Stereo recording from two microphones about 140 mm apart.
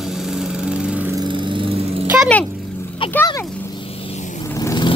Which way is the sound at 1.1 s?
35° right (ahead or behind).